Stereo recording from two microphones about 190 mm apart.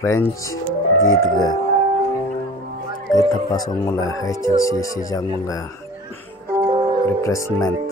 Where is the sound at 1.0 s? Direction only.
90° left.